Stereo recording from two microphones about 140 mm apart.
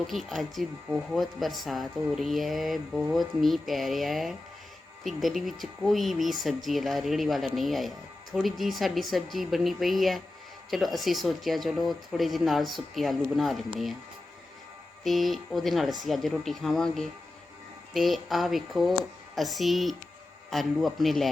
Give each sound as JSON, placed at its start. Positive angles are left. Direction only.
{"t": 0.1, "sound": "speech", "side_deg": 0}
{"t": 15.0, "sound": "speech", "side_deg": 0}